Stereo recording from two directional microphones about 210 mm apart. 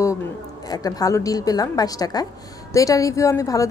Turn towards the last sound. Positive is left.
turn(degrees=15)  # may be behind; listen again after turning